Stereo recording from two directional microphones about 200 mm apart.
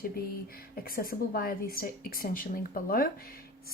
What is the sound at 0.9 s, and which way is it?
Speech, 50° left (ahead or behind).